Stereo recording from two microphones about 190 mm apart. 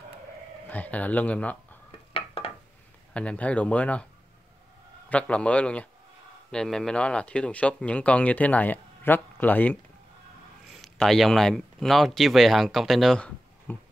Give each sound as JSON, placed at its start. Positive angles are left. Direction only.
{"t": 0.7, "sound": "speech", "side_deg": 10}
{"t": 2.1, "sound": "a sound", "side_deg": 30}
{"t": 3.1, "sound": "speech", "side_deg": 5}
{"t": 5.1, "sound": "speech", "side_deg": 5}